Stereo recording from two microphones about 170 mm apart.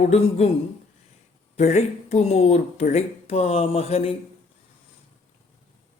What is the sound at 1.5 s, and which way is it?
A woman's voice, 40° left (ahead or behind).